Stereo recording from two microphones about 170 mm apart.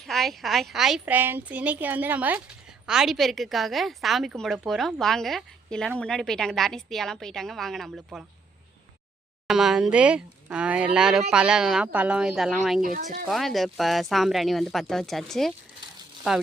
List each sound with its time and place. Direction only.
0.0 s a woman's voice: centre (ahead or behind)
9.5 s a woman's voice: centre (ahead or behind)
12.8 s speech: 55° right (ahead or behind)
13.2 s a woman's voice: centre (ahead or behind)